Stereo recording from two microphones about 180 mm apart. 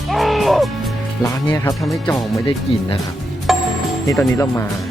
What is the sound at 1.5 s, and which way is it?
Speech, 20° left (ahead or behind).